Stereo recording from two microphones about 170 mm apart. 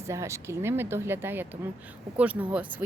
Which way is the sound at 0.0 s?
15° right (ahead or behind).